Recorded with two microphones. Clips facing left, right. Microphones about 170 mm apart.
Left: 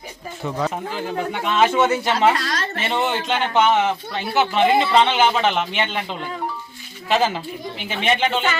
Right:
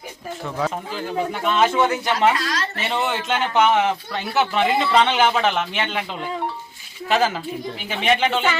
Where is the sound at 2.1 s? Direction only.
35° left (ahead or behind).